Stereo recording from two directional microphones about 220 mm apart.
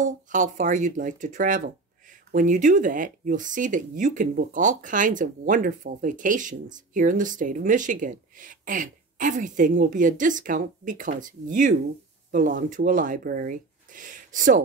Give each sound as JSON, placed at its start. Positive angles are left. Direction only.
{"t": 0.0, "sound": "speech", "side_deg": -35}